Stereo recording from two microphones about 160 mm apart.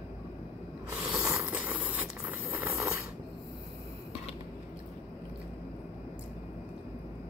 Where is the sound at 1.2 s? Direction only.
15° right (ahead or behind).